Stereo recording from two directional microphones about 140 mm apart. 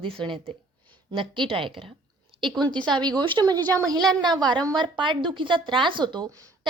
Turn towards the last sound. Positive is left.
turn(degrees=-25)  # may be behind; listen again after turning